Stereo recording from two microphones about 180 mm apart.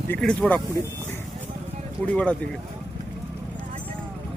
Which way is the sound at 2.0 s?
5° left (ahead or behind).